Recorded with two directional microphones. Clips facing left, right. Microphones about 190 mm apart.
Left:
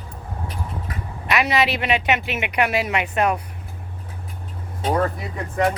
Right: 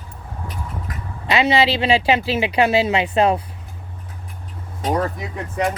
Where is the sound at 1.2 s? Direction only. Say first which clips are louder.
Right 3 dB; 25° right (ahead or behind).